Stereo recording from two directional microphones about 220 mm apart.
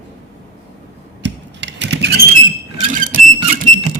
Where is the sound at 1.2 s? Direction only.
55° right (ahead or behind).